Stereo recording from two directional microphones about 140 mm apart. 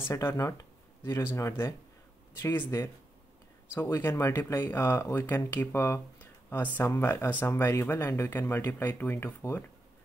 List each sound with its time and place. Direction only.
0.0 s speech: 20° left (ahead or behind)